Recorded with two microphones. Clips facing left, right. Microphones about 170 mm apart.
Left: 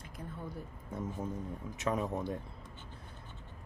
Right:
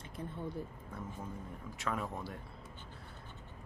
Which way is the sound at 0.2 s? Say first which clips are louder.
Right 3 dB; 25° right (ahead or behind).